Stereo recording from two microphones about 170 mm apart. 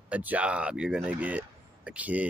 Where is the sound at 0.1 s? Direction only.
10° right (ahead or behind).